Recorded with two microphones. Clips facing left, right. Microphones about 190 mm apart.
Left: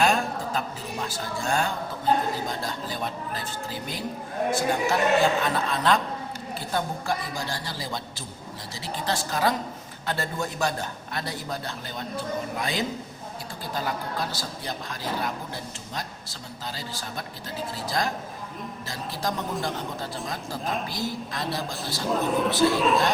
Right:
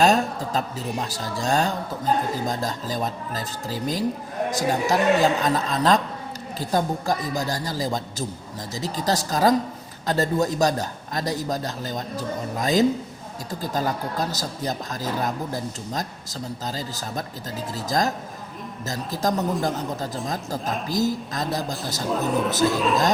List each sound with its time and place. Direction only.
0.0 s a man's voice: 40° right (ahead or behind)
22.1 s speech: centre (ahead or behind)